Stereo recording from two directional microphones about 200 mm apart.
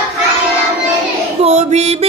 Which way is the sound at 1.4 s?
35° right (ahead or behind).